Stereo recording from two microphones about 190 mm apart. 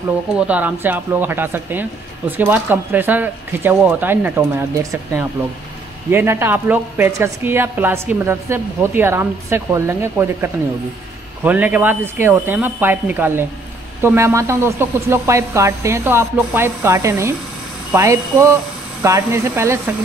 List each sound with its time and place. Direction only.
0.4 s speech: 10° right (ahead or behind)